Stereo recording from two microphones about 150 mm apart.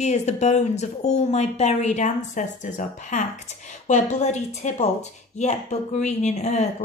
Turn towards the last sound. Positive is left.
turn(degrees=50)  # may be behind; listen again after turning